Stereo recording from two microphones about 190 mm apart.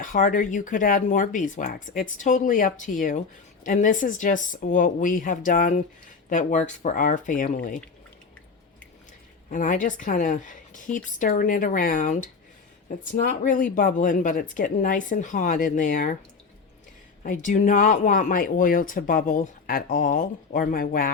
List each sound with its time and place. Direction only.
0.0 s speech: 45° left (ahead or behind)
9.5 s speech: 45° left (ahead or behind)
17.2 s speech: 40° left (ahead or behind)